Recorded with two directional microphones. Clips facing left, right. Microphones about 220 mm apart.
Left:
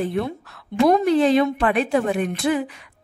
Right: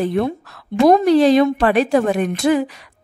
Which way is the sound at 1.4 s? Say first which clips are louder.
Right 5 dB; 40° right (ahead or behind).